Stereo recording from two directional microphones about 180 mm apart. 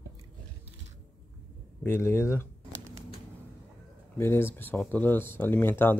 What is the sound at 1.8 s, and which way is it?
Speech, 15° left (ahead or behind).